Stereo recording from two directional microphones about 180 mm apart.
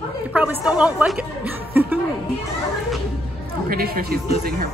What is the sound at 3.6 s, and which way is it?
Speech, 55° right (ahead or behind).